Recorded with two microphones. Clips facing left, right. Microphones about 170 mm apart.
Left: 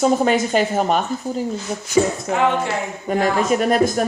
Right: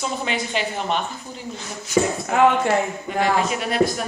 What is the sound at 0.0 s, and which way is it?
Speech, 45° left (ahead or behind).